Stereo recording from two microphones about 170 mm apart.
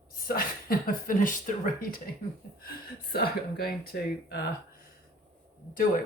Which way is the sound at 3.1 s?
65° left (ahead or behind).